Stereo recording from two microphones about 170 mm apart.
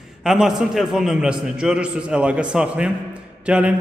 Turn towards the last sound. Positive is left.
turn(degrees=-5)  # may be behind; listen again after turning